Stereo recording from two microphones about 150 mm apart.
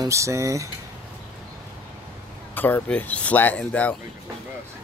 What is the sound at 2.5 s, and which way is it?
Speech, 10° left (ahead or behind).